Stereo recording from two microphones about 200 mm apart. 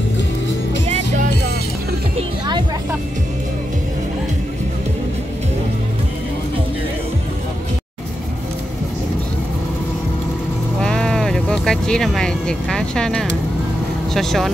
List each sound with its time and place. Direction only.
0.8 s music: 35° right (ahead or behind)
2.1 s music: 20° right (ahead or behind)
10.8 s sheep: 5° left (ahead or behind)
14.1 s vehicle: centre (ahead or behind)